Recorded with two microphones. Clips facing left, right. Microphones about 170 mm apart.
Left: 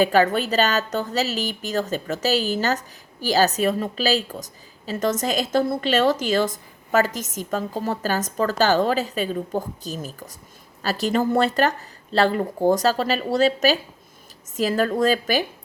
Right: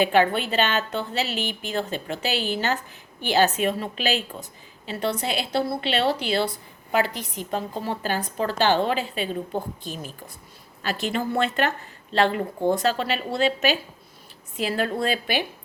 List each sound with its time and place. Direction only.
0.0 s a woman's voice: 40° left (ahead or behind)